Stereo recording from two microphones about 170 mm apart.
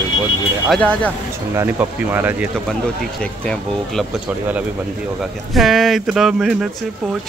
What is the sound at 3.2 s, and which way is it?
Speech, 5° left (ahead or behind).